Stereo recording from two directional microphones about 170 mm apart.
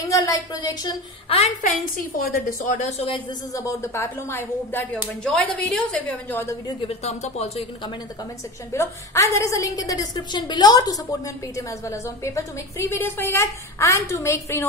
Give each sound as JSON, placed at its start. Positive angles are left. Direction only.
{"t": 0.0, "sound": "speech", "side_deg": 20}
{"t": 1.3, "sound": "speech", "side_deg": 45}
{"t": 3.5, "sound": "a woman's voice", "side_deg": 15}
{"t": 6.9, "sound": "speech", "side_deg": 40}
{"t": 8.7, "sound": "a woman's voice", "side_deg": 15}